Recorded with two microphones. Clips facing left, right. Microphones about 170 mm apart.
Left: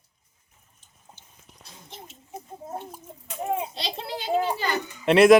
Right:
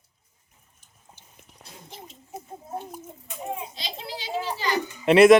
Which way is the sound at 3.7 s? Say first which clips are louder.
Left 4 dB; 60° left (ahead or behind).